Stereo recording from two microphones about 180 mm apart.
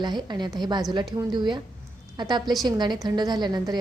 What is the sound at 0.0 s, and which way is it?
A woman's voice, 25° right (ahead or behind).